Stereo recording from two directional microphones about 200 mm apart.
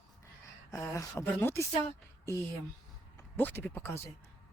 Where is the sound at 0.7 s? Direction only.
15° left (ahead or behind).